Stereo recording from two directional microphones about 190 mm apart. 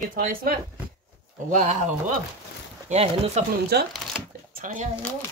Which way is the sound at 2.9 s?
35° right (ahead or behind).